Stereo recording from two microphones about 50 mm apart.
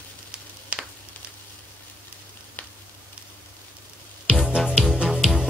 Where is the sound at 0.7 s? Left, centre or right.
Right.